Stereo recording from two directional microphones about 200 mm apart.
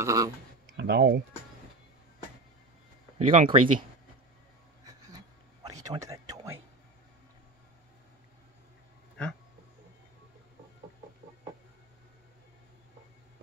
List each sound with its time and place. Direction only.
0.0 s speech: 15° right (ahead or behind)
0.7 s speech: 55° right (ahead or behind)
3.2 s speech: 30° right (ahead or behind)
5.1 s a sound: 20° right (ahead or behind)
5.9 s speech: 15° right (ahead or behind)